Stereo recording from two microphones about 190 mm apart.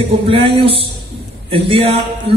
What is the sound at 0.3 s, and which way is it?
A man's voice, 30° right (ahead or behind).